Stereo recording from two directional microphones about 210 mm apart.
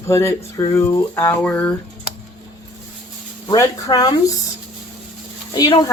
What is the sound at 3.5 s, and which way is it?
Speech, 15° left (ahead or behind).